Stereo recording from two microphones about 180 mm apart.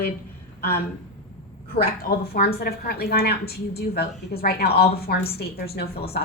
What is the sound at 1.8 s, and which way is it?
A woman's voice, 55° left (ahead or behind).